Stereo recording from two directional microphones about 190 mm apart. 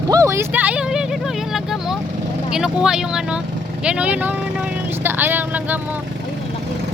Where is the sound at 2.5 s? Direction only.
5° right (ahead or behind).